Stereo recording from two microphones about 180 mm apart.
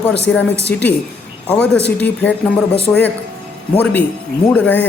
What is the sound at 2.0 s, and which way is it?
Speech, 10° left (ahead or behind).